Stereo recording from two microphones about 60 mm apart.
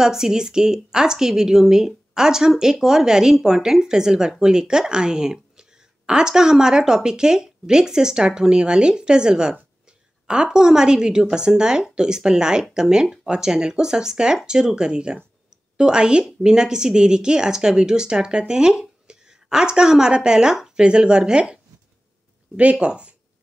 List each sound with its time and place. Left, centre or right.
0.0 s speech: centre
22.6 s speech: centre